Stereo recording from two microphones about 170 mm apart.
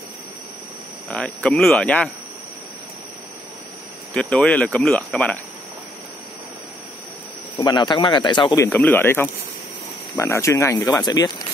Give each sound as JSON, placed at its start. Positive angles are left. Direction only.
{"t": 1.0, "sound": "speech", "side_deg": 5}
{"t": 4.1, "sound": "speech", "side_deg": 0}
{"t": 7.5, "sound": "speech", "side_deg": 25}
{"t": 8.6, "sound": "speech", "side_deg": 10}